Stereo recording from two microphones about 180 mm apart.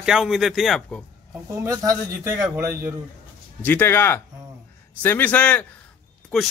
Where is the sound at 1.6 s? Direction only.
15° right (ahead or behind).